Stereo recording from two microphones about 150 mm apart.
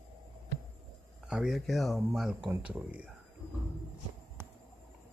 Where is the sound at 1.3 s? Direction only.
5° right (ahead or behind).